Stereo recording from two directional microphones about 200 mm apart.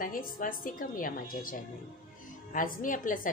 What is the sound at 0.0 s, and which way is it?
A woman's voice, 45° left (ahead or behind).